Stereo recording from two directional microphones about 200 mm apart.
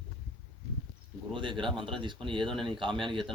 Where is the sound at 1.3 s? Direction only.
25° right (ahead or behind).